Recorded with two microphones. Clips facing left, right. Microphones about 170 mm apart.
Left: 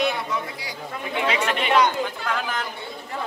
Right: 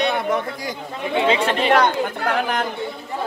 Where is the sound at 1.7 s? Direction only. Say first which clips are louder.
Right 1 dB; 55° right (ahead or behind).